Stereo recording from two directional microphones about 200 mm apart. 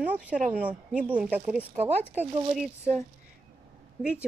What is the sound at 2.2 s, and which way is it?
Speech, 25° right (ahead or behind).